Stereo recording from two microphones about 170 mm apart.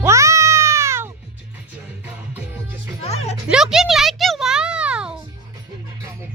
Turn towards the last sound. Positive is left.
turn(degrees=-5)  # may be behind; listen again after turning